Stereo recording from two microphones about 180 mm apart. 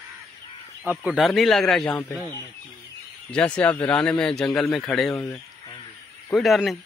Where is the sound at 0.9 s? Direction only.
5° right (ahead or behind).